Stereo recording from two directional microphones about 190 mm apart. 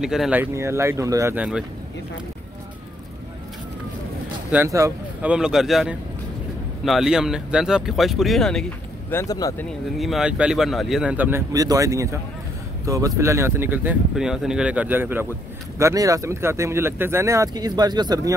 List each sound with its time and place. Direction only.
0.0 s speech: centre (ahead or behind)
4.5 s speech: 15° right (ahead or behind); by 8.6 s centre (ahead or behind)
9.1 s speech: 15° left (ahead or behind)
9.7 s speech: centre (ahead or behind); by 18.3 s 20° right (ahead or behind)